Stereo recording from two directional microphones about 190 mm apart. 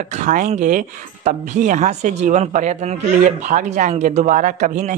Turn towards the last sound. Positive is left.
turn(degrees=-40)  # may be behind; listen again after turning